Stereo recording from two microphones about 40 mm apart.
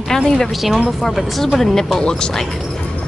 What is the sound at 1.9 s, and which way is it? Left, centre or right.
Speech, centre.